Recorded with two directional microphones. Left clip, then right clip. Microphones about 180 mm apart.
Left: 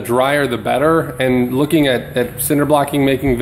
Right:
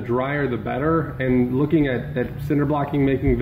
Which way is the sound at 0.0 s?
20° left (ahead or behind).